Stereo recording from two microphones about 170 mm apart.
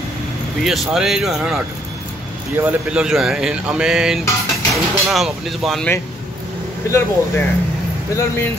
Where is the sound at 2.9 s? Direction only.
5° right (ahead or behind).